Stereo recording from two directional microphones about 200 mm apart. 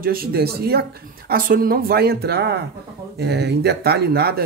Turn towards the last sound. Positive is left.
turn(degrees=-50)  # may be behind; listen again after turning